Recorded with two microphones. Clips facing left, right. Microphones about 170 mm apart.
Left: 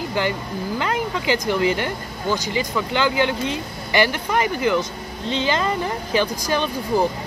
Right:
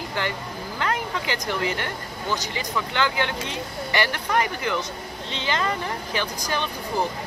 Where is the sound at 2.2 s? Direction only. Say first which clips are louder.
Left 6 dB; 10° left (ahead or behind).